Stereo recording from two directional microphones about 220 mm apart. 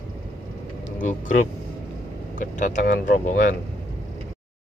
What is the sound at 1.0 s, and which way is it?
Speech, 35° left (ahead or behind).